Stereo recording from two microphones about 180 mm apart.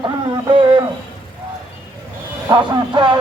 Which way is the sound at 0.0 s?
25° right (ahead or behind).